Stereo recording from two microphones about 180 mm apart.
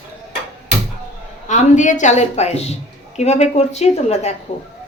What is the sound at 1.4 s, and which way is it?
Speech, 40° left (ahead or behind).